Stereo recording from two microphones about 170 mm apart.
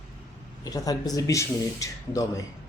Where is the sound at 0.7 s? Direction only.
20° left (ahead or behind).